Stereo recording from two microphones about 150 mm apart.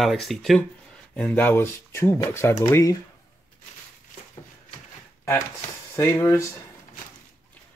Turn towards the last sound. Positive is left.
turn(degrees=20)  # may be behind; listen again after turning